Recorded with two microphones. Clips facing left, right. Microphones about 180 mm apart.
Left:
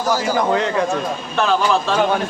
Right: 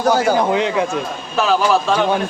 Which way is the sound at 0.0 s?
60° right (ahead or behind).